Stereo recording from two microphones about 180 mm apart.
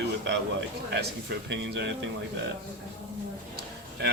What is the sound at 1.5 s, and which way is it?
Speech, 75° right (ahead or behind).